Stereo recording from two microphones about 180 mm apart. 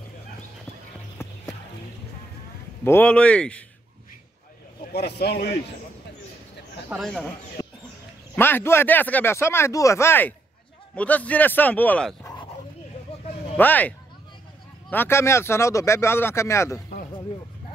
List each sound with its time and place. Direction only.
2.8 s speech: 10° left (ahead or behind)
4.9 s a man's voice: 65° left (ahead or behind)
6.9 s speech: centre (ahead or behind)
7.6 s a sound: 20° left (ahead or behind)
8.4 s speech: 10° left (ahead or behind)
12.2 s dog: 20° left (ahead or behind)
13.1 s vehicle: 35° left (ahead or behind)
13.6 s speech: 10° left (ahead or behind)